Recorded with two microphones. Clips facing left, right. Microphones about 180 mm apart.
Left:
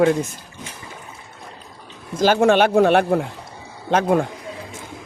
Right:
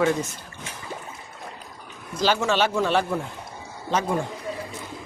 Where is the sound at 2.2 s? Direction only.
55° left (ahead or behind).